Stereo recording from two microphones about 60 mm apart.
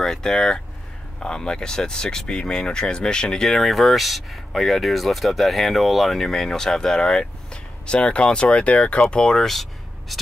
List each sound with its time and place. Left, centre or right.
0.0 s speech: centre
9.1 s speech: centre